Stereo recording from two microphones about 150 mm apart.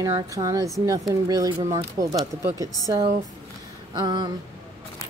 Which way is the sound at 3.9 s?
30° right (ahead or behind).